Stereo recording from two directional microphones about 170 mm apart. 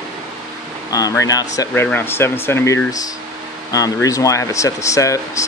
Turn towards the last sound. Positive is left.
turn(degrees=20)  # may be behind; listen again after turning